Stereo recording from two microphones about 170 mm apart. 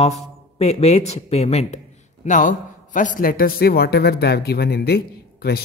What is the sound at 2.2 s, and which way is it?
A man's voice, 50° left (ahead or behind).